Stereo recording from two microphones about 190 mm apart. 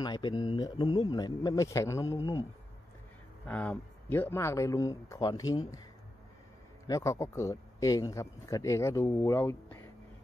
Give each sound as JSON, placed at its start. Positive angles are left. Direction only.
{"t": 0.0, "sound": "speech", "side_deg": 25}
{"t": 3.4, "sound": "speech", "side_deg": 5}
{"t": 6.9, "sound": "speech", "side_deg": 15}